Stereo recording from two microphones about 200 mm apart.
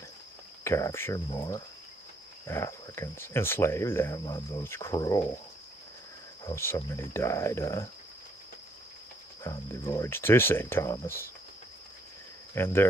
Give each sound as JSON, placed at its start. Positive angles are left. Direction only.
{"t": 0.7, "sound": "speech", "side_deg": 15}
{"t": 2.4, "sound": "speech", "side_deg": 15}
{"t": 6.4, "sound": "speech", "side_deg": 10}
{"t": 9.4, "sound": "speech", "side_deg": 15}
{"t": 12.5, "sound": "speech", "side_deg": 10}